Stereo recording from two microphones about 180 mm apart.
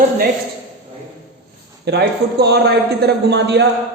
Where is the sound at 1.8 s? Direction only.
65° right (ahead or behind).